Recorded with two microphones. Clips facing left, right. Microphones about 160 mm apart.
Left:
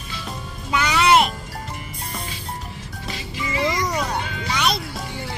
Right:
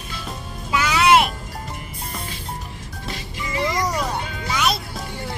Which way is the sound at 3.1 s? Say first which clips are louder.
Left 1 dB; centre (ahead or behind).